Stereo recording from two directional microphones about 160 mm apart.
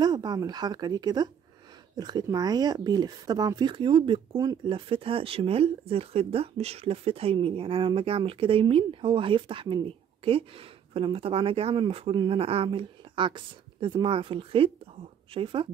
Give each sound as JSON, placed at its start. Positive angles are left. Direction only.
{"t": 0.0, "sound": "speech", "side_deg": -25}